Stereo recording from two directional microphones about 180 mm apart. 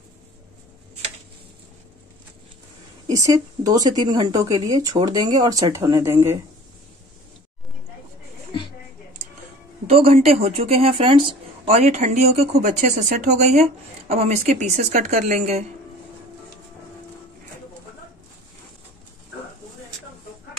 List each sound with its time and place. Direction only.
3.1 s speech: 20° right (ahead or behind)
9.8 s speech: 35° right (ahead or behind)